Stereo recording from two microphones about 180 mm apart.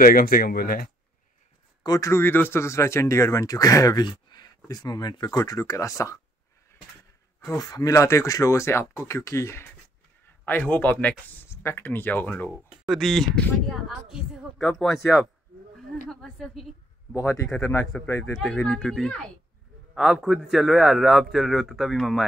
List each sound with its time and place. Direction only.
0.0 s speech: 55° left (ahead or behind)
1.8 s speech: 20° left (ahead or behind)
7.4 s a woman's voice: 20° left (ahead or behind); by 16.6 s centre (ahead or behind)
17.1 s speech: 15° left (ahead or behind)
18.3 s a man's voice: centre (ahead or behind)